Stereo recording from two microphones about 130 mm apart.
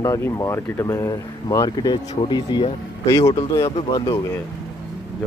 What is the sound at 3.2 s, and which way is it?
Speech, 45° left (ahead or behind).